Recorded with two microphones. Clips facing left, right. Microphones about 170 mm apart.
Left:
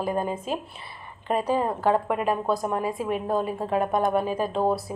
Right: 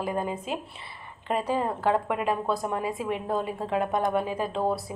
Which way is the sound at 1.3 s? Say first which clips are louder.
Left 3 dB; 20° left (ahead or behind).